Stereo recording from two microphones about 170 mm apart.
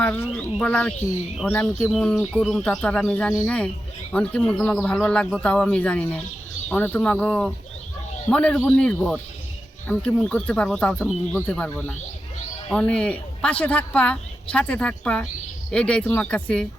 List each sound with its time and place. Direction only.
0.0 s speech: 10° left (ahead or behind)